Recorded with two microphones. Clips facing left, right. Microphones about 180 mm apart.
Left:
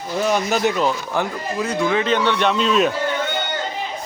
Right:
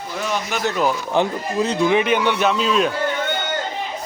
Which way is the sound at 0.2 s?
40° left (ahead or behind).